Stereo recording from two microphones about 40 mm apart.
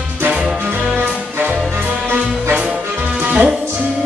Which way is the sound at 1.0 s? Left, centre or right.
Right.